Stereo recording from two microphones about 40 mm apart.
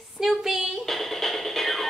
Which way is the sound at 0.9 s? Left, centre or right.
Centre.